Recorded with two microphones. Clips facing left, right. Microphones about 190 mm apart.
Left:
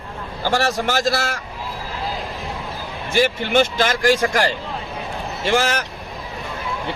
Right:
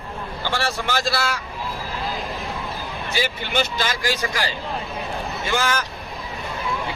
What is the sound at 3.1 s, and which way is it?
Speech, 50° left (ahead or behind).